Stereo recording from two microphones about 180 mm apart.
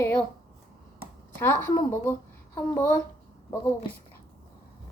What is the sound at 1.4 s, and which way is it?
A woman's voice, 10° left (ahead or behind).